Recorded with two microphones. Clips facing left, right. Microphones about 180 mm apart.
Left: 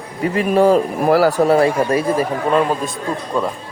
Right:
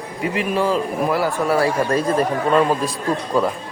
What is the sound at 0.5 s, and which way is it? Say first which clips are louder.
Speech: left 8 dB; 50° left (ahead or behind).